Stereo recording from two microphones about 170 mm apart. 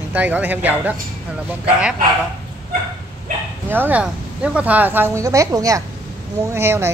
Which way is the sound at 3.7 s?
10° right (ahead or behind).